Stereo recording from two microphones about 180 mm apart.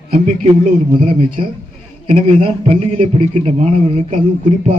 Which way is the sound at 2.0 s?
35° right (ahead or behind).